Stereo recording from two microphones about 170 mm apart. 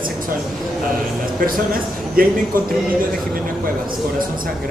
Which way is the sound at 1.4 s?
60° right (ahead or behind).